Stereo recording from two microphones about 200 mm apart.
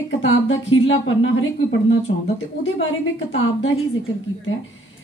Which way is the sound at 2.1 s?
55° left (ahead or behind).